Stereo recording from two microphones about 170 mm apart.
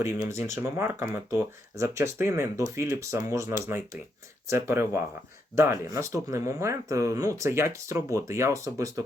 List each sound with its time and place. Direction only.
0.0 s speech: 15° right (ahead or behind)